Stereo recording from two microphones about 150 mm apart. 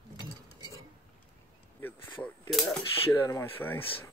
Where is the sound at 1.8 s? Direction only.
15° left (ahead or behind).